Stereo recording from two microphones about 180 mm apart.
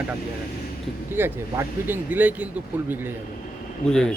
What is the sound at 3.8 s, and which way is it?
Speech, 5° left (ahead or behind).